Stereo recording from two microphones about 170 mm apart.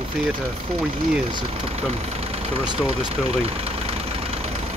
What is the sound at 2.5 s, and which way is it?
Speech, 30° right (ahead or behind).